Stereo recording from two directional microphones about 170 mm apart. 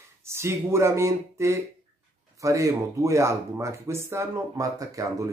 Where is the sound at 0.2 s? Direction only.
15° right (ahead or behind).